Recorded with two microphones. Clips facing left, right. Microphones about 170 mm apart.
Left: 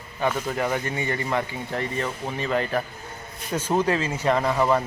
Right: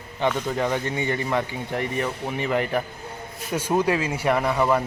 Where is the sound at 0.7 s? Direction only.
20° right (ahead or behind).